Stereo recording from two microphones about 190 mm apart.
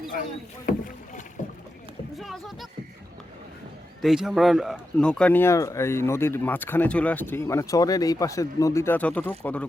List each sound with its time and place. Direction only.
0.2 s speech: 45° left (ahead or behind)
2.1 s speech: centre (ahead or behind)
4.0 s a man's voice: centre (ahead or behind)